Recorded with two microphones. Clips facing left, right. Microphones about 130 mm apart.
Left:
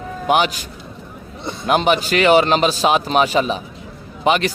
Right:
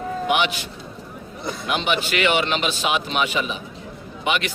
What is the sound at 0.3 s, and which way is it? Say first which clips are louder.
Speech: left 6 dB; 40° left (ahead or behind).